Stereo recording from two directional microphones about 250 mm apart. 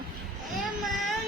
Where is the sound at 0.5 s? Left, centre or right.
Centre.